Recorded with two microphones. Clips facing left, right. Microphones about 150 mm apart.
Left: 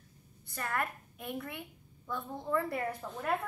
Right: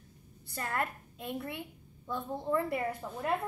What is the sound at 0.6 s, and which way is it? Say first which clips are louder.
A woman's voice: right 1 dB; 25° right (ahead or behind).